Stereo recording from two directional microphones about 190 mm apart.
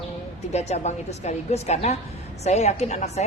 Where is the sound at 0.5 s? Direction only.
35° left (ahead or behind).